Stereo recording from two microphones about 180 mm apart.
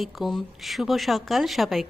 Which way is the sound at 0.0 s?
Centre (ahead or behind).